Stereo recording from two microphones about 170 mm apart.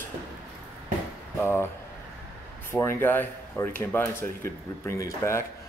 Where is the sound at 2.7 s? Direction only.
15° left (ahead or behind).